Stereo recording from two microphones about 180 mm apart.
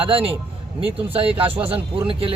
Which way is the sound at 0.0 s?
30° right (ahead or behind).